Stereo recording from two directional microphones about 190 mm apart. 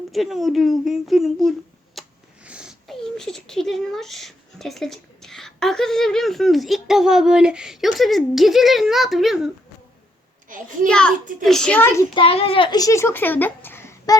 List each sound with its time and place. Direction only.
0.1 s a child's voice: centre (ahead or behind)
10.5 s a child's voice: 45° right (ahead or behind)
10.8 s a child's voice: 5° left (ahead or behind)
12.1 s a child's voice: 30° left (ahead or behind); by 14.2 s 15° left (ahead or behind)